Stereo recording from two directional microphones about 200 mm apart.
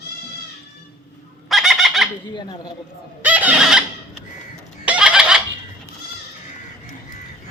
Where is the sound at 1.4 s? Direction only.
Centre (ahead or behind).